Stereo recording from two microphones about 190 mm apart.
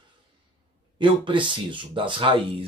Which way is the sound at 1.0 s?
25° right (ahead or behind).